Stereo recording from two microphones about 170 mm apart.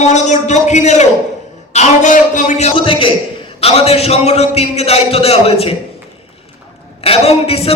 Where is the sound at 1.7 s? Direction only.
45° left (ahead or behind).